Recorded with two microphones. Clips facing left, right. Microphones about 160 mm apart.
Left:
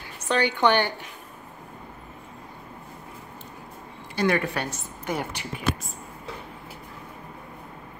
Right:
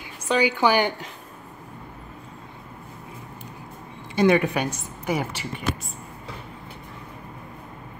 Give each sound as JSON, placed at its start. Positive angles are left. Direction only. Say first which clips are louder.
{"t": 0.3, "sound": "a woman's voice", "louder": "right 1 dB", "side_deg": -10}
{"t": 4.1, "sound": "a woman's voice", "louder": "right 5 dB", "side_deg": -20}